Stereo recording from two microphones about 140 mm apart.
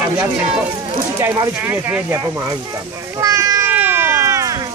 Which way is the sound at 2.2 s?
25° right (ahead or behind).